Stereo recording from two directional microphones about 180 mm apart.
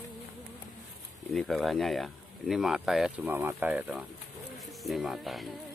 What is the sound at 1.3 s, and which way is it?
Speech, centre (ahead or behind).